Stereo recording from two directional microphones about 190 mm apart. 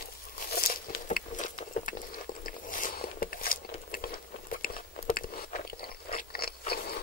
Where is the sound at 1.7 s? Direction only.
45° left (ahead or behind).